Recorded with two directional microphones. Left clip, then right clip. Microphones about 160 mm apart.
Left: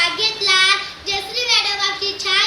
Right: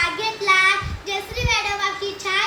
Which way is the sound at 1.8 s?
25° right (ahead or behind).